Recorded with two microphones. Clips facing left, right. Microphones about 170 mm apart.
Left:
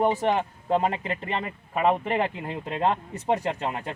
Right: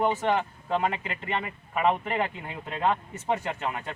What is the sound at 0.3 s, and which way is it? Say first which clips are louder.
Speech: left 2 dB; 30° left (ahead or behind).